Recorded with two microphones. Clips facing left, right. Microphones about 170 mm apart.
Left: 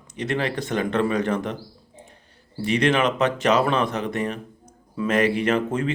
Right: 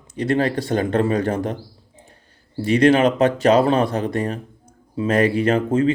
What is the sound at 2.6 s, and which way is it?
A man's voice, 35° right (ahead or behind).